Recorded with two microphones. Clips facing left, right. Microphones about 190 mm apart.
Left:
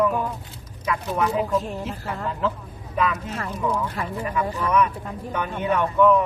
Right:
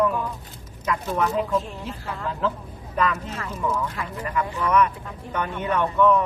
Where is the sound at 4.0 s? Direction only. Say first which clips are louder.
Left 3 dB; 35° left (ahead or behind).